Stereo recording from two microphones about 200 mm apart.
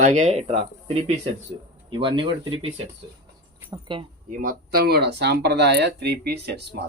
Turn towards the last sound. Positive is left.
turn(degrees=-55)  # may be behind; listen again after turning